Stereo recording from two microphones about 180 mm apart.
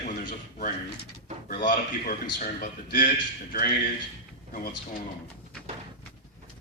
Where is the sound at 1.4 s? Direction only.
50° left (ahead or behind).